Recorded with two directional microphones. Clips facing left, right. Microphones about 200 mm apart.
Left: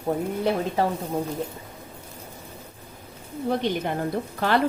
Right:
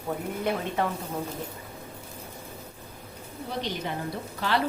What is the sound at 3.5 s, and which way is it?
Speech, 55° left (ahead or behind).